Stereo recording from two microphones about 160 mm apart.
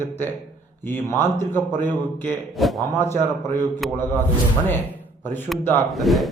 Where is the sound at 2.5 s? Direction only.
Centre (ahead or behind).